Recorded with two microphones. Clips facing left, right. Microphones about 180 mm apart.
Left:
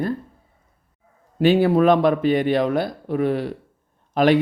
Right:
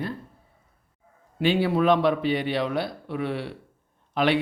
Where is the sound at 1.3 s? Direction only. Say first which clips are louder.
Left 6 dB; 45° left (ahead or behind).